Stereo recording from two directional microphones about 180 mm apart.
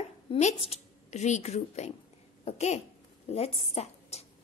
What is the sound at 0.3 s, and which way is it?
A woman's voice, 35° left (ahead or behind).